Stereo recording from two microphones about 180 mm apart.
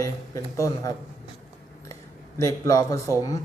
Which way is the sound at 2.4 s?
20° left (ahead or behind).